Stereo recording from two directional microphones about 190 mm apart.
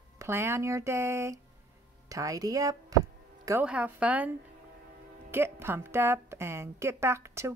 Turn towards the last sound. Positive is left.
turn(degrees=-15)  # may be behind; listen again after turning